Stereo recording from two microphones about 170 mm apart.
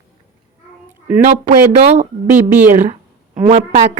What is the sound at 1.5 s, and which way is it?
Speech, 40° right (ahead or behind).